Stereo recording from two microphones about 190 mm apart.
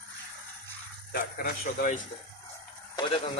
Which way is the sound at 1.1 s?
50° left (ahead or behind).